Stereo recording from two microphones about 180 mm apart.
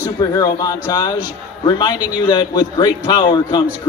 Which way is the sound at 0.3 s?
20° left (ahead or behind).